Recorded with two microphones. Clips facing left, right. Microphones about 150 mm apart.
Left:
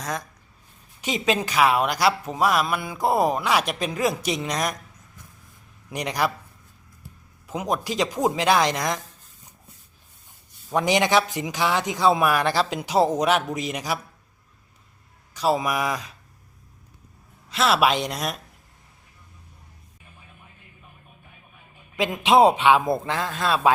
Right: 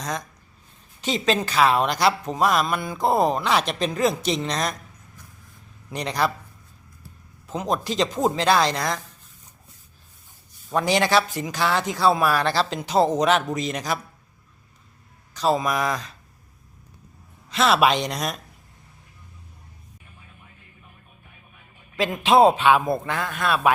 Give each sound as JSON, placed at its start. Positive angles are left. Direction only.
{"t": 0.0, "sound": "a woman's voice", "side_deg": 5}
{"t": 5.9, "sound": "a woman's voice", "side_deg": 15}
{"t": 7.4, "sound": "a woman's voice", "side_deg": 10}
{"t": 10.8, "sound": "a woman's voice", "side_deg": 15}
{"t": 15.3, "sound": "a woman's voice", "side_deg": 10}
{"t": 17.5, "sound": "speech", "side_deg": 0}
{"t": 21.9, "sound": "a man's voice", "side_deg": 15}